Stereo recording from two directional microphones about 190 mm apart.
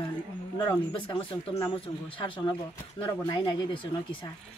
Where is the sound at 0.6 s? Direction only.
25° left (ahead or behind).